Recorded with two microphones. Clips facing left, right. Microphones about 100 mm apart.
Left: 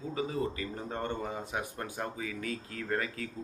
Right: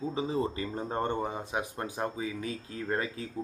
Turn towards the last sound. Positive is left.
turn(degrees=-25)  # may be behind; listen again after turning